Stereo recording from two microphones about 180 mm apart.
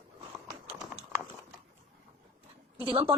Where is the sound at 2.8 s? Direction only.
30° right (ahead or behind).